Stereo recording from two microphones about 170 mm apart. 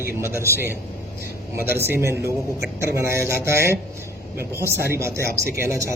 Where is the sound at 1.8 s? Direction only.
15° right (ahead or behind).